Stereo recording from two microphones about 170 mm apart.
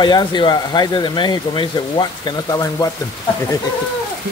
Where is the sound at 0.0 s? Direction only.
25° left (ahead or behind).